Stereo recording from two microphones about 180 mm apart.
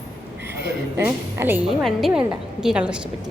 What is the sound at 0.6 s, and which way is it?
Speech, 70° right (ahead or behind).